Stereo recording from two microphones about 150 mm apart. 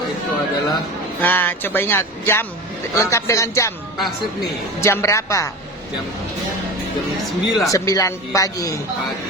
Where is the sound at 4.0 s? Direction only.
Centre (ahead or behind).